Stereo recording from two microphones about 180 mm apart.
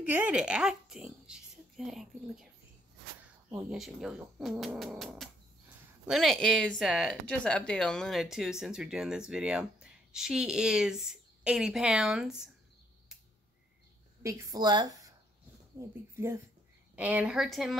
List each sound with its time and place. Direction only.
0.0 s speech: 10° right (ahead or behind)
3.7 s speech: centre (ahead or behind)
14.2 s a woman's voice: 15° right (ahead or behind); by 17.7 s centre (ahead or behind)